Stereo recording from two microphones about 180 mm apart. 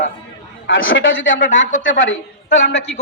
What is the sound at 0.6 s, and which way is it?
A man's voice, 90° left.